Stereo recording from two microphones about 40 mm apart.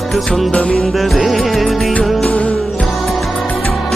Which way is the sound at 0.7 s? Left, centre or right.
Centre.